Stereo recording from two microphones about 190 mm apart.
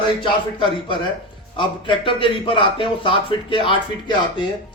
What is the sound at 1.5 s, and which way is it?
A man's voice, 25° left (ahead or behind).